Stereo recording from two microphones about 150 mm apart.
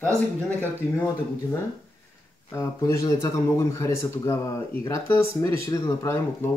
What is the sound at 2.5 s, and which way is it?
Speech, 20° left (ahead or behind).